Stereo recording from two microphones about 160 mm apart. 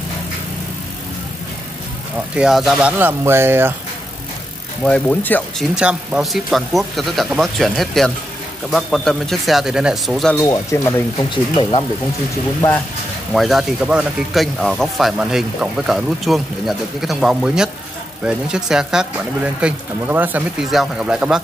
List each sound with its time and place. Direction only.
2.3 s speech: 5° right (ahead or behind)
3.0 s speech: 15° right (ahead or behind)
4.8 s speech: 10° left (ahead or behind)
5.8 s speech: 5° right (ahead or behind)
10.3 s speech: 20° left (ahead or behind)
13.3 s speech: centre (ahead or behind)